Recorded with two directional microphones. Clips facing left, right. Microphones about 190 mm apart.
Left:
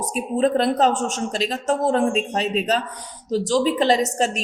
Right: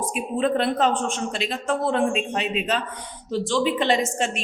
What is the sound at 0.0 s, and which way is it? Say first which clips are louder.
A man's voice: left 3 dB; 40° left (ahead or behind).